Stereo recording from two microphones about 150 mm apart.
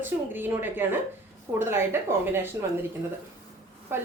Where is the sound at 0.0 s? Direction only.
15° right (ahead or behind).